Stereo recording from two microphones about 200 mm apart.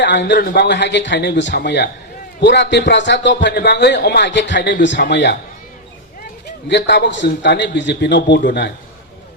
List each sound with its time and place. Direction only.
0.0 s a man's voice: 60° left (ahead or behind)
6.7 s a man's voice: 60° left (ahead or behind)